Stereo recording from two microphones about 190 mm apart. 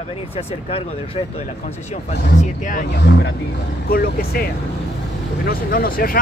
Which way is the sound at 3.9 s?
50° left (ahead or behind).